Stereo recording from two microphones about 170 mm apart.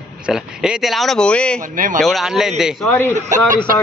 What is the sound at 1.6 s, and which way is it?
Speech, 50° right (ahead or behind).